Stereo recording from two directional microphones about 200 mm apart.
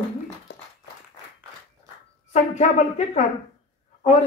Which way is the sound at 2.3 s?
35° left (ahead or behind).